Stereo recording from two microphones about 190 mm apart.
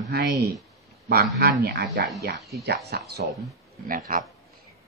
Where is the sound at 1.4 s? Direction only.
55° right (ahead or behind).